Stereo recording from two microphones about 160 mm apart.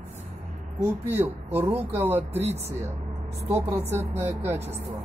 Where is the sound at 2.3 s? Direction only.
40° right (ahead or behind).